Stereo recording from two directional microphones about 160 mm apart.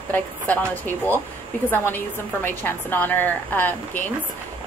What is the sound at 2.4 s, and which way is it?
A woman's voice, 15° left (ahead or behind).